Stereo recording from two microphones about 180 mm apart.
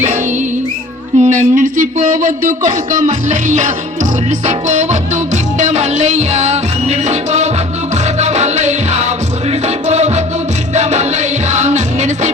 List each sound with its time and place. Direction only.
1.2 s speech: 40° right (ahead or behind)
4.3 s music: 40° right (ahead or behind)